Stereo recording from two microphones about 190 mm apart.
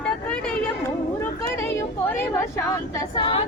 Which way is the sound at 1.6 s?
10° left (ahead or behind).